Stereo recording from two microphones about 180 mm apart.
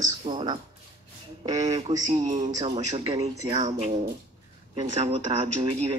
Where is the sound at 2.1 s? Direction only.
40° right (ahead or behind).